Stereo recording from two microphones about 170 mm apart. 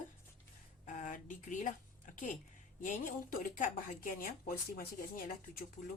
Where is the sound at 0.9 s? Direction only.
50° left (ahead or behind).